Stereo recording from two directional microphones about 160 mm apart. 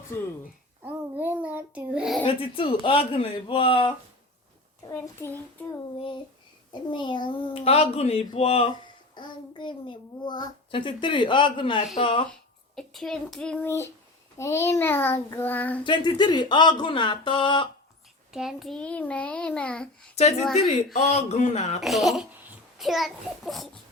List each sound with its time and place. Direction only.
0.1 s a child's voice: 15° left (ahead or behind)
0.9 s a child's voice: 10° right (ahead or behind)
2.2 s a child's voice: 35° left (ahead or behind)
4.9 s a child's voice: 15° left (ahead or behind)
6.9 s a child's voice: 30° left (ahead or behind)
12.7 s a child's voice: centre (ahead or behind)
15.8 s speech: 30° left (ahead or behind)
18.3 s a child's voice: centre (ahead or behind)
20.9 s a man's voice: 45° left (ahead or behind)
21.8 s a child's voice: centre (ahead or behind)